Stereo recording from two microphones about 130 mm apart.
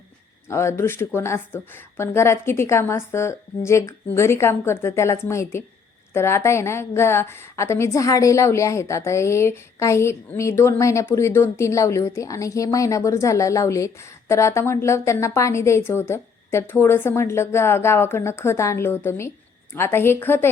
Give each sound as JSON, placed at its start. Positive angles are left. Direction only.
{"t": 0.4, "sound": "a woman's voice", "side_deg": 20}